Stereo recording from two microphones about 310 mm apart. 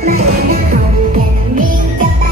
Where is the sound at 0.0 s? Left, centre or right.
Right.